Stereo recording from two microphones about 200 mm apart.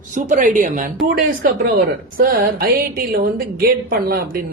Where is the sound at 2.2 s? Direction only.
45° right (ahead or behind).